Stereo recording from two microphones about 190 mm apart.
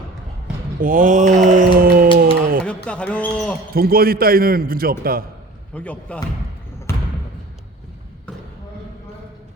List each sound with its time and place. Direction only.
0.8 s a sound: 45° right (ahead or behind)
2.6 s speech: 5° left (ahead or behind)
3.8 s a man's voice: 50° right (ahead or behind)
5.7 s a man's voice: 5° left (ahead or behind)
6.9 s basketball bounce: 15° left (ahead or behind)